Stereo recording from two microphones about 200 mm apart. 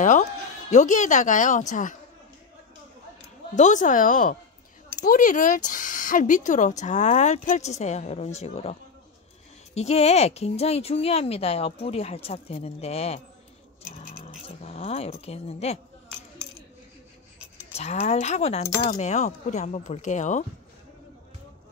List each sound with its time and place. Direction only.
0.7 s speech: 35° left (ahead or behind)
3.5 s speech: 40° left (ahead or behind)
9.8 s speech: 30° left (ahead or behind)
14.6 s speech: 30° left (ahead or behind)
17.7 s speech: 35° left (ahead or behind)